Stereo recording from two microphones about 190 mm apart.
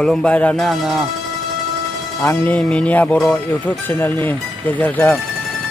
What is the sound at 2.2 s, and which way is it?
Speech, 10° left (ahead or behind).